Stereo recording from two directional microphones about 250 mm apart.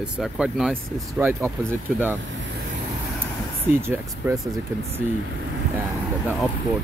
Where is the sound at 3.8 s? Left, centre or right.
Centre.